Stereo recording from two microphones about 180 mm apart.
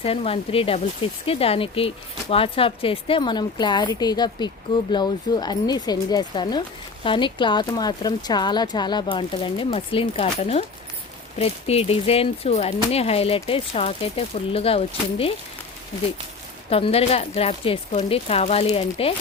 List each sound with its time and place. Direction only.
0.0 s speech: 30° left (ahead or behind)
16.6 s speech: 35° left (ahead or behind)